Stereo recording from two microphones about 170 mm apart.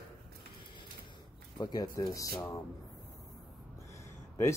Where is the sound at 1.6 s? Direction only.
25° left (ahead or behind).